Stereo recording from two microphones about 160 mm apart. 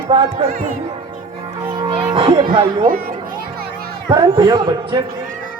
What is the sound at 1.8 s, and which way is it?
Speech, 35° right (ahead or behind).